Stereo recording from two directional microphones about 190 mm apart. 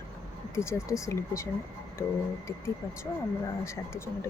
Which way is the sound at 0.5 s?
15° left (ahead or behind).